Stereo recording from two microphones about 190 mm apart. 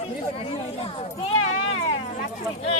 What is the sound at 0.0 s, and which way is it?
Speech, 30° left (ahead or behind).